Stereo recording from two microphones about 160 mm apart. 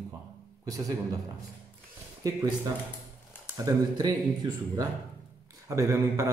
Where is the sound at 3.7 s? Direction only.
20° right (ahead or behind).